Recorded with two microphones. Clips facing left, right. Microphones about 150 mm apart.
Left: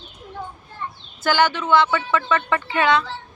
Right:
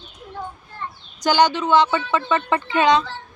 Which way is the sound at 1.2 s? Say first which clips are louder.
Right 2 dB; 15° right (ahead or behind).